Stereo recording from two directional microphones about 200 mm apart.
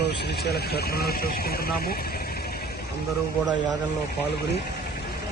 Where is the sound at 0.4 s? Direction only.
55° left (ahead or behind).